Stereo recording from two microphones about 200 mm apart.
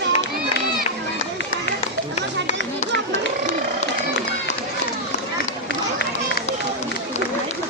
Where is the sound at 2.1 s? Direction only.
35° left (ahead or behind).